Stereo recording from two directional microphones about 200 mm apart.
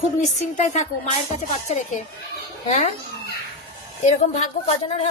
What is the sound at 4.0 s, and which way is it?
A man's voice, 35° left (ahead or behind).